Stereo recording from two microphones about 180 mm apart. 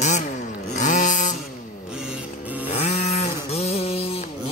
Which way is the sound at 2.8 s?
40° left (ahead or behind).